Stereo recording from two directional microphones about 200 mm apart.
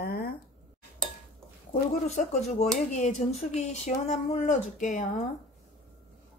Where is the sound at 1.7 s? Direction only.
35° left (ahead or behind).